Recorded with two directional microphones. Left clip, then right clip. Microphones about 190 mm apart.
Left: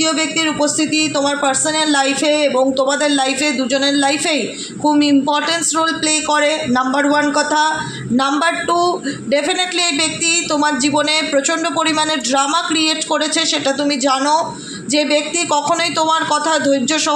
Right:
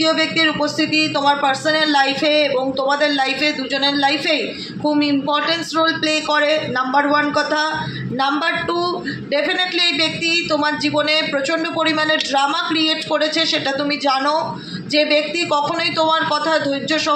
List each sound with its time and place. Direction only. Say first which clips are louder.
0.0 s a man's voice: right 1 dB; 45° left (ahead or behind)